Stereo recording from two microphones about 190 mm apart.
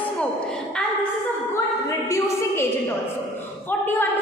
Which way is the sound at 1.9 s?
15° left (ahead or behind).